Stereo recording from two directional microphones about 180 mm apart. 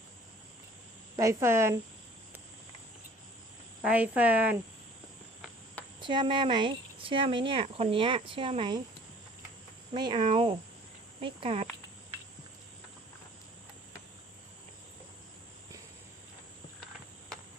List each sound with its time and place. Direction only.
1.1 s speech: 15° right (ahead or behind)
3.8 s speech: 10° right (ahead or behind)
6.0 s speech: 25° right (ahead or behind)
9.9 s speech: 25° right (ahead or behind)